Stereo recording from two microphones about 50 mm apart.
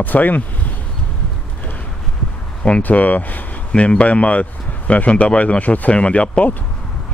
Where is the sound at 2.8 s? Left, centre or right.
Left.